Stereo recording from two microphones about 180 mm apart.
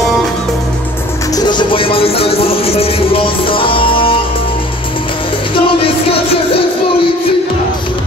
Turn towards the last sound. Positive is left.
turn(degrees=30)  # may be behind; listen again after turning